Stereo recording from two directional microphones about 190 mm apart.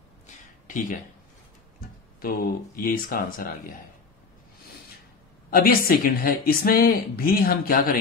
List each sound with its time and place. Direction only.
0.7 s speech: 45° left (ahead or behind)
2.2 s speech: 50° left (ahead or behind)
5.5 s speech: 50° left (ahead or behind)